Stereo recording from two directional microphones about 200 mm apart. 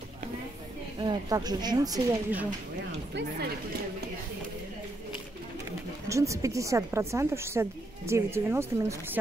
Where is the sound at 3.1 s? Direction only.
60° right (ahead or behind).